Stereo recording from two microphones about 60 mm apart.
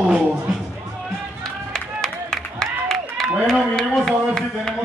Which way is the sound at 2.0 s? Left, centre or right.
Centre.